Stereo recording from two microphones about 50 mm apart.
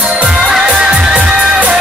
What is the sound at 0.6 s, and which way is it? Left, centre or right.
Music, right.